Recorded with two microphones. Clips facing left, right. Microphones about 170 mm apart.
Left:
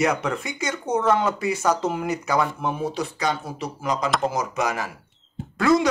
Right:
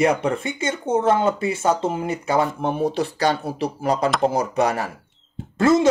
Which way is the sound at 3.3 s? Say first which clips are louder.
Right 6 dB; 65° right (ahead or behind).